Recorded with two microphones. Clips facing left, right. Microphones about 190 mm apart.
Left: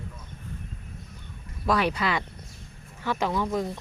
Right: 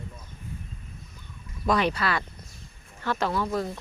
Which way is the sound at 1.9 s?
15° left (ahead or behind).